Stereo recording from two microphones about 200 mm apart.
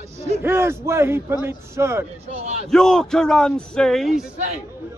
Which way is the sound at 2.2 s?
30° right (ahead or behind).